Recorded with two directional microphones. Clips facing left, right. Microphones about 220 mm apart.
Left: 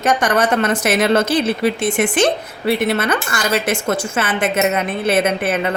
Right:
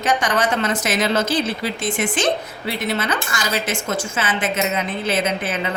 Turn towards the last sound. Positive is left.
turn(degrees=60)  # may be behind; listen again after turning